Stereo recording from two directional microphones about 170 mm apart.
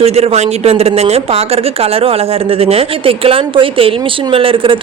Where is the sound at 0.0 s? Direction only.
35° right (ahead or behind).